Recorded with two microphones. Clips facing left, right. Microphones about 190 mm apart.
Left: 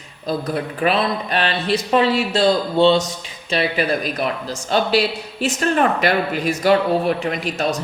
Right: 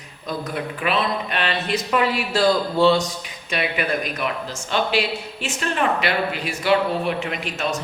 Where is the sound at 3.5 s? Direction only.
35° left (ahead or behind).